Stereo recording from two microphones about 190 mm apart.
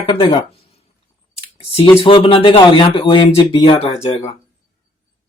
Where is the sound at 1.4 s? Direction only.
30° left (ahead or behind).